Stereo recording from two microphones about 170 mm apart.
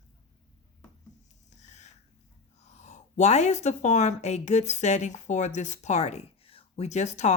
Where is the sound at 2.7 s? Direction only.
45° left (ahead or behind).